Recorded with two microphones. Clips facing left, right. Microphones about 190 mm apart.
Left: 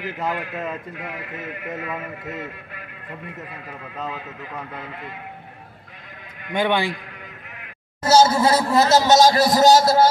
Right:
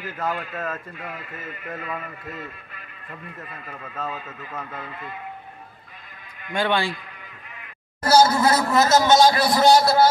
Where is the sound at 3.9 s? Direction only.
15° left (ahead or behind).